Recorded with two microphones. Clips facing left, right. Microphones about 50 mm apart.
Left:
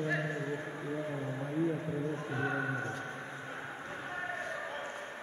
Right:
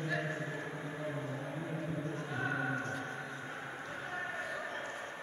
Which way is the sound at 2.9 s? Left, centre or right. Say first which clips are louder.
Even; centre.